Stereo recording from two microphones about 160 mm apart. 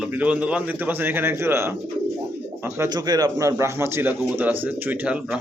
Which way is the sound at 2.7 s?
20° right (ahead or behind).